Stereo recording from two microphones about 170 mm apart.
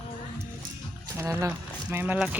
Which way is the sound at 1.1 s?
15° right (ahead or behind).